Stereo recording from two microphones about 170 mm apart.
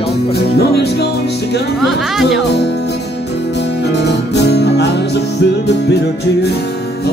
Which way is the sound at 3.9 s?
85° left.